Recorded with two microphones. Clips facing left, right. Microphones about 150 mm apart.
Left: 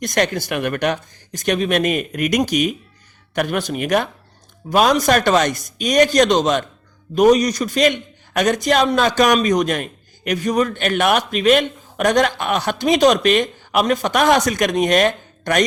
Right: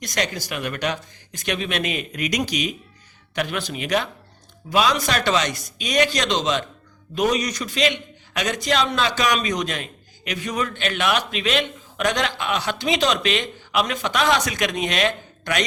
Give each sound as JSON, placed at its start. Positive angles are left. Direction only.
{"t": 0.0, "sound": "a man's voice", "side_deg": 55}